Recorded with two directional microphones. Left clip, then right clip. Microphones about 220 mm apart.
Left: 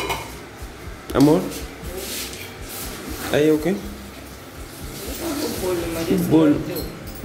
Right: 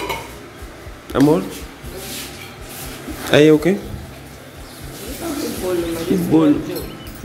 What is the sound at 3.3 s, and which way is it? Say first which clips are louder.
Speech: right 6 dB; 30° right (ahead or behind).